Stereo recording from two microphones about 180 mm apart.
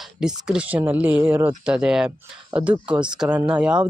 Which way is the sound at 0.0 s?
5° right (ahead or behind).